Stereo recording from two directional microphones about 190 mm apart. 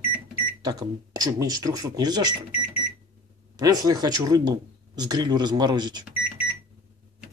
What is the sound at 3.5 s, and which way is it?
Speech, 20° right (ahead or behind).